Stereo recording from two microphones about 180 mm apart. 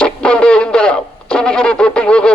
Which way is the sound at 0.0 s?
5° left (ahead or behind).